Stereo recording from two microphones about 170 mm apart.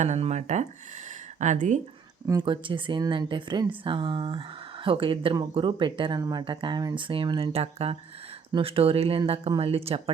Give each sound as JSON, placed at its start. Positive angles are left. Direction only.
{"t": 0.0, "sound": "speech", "side_deg": -40}
{"t": 2.2, "sound": "speech", "side_deg": -25}